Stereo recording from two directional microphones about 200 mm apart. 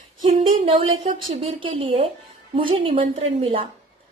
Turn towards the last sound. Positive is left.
turn(degrees=-30)  # may be behind; listen again after turning